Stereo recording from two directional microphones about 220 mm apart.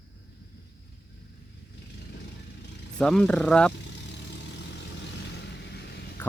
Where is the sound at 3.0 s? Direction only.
5° left (ahead or behind).